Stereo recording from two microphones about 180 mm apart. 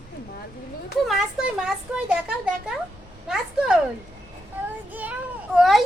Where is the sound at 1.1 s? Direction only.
Centre (ahead or behind).